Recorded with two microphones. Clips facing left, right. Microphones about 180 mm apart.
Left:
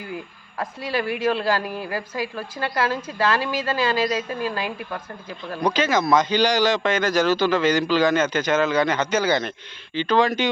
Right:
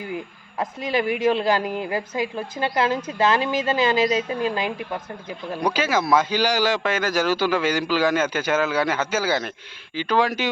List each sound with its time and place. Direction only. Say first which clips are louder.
0.6 s a woman's voice: right 2 dB; 20° right (ahead or behind)